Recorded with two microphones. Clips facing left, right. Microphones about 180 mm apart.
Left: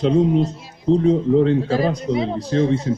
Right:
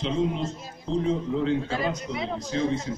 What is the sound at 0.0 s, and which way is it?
A man's voice, 40° left (ahead or behind).